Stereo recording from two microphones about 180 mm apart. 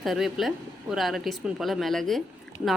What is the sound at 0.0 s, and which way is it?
Speech, centre (ahead or behind).